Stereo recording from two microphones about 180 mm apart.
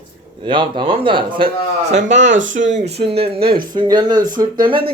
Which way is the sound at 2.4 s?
90° right.